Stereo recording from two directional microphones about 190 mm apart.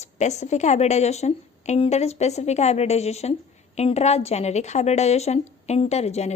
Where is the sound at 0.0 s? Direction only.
35° left (ahead or behind).